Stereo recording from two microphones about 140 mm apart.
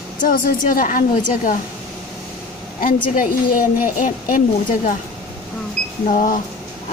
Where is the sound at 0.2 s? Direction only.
85° left.